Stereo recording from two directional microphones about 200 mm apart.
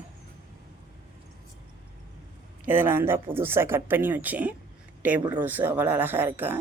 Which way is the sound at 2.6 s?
10° right (ahead or behind).